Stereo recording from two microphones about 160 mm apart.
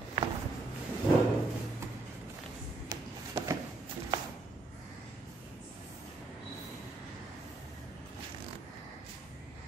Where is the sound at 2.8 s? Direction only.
20° right (ahead or behind).